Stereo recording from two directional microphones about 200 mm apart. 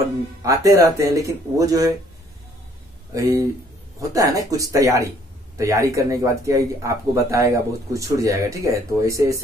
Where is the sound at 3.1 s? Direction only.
15° right (ahead or behind).